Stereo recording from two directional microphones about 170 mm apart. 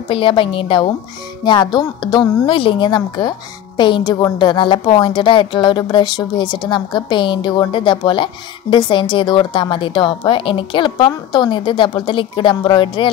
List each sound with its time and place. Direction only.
0.1 s a woman's voice: 30° left (ahead or behind)